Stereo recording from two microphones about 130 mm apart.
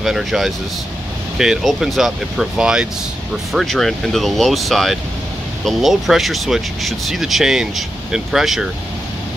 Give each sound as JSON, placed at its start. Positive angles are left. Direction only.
{"t": 0.0, "sound": "speech", "side_deg": 0}